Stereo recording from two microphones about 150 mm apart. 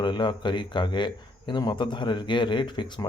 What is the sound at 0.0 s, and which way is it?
Speech, 30° left (ahead or behind).